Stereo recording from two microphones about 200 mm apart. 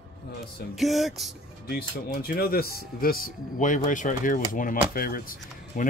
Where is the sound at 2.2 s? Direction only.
50° left (ahead or behind).